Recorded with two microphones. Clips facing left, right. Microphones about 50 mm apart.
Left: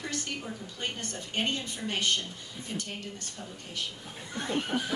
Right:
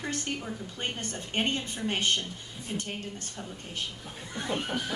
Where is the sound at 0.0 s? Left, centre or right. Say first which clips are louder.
Right 2 dB; right.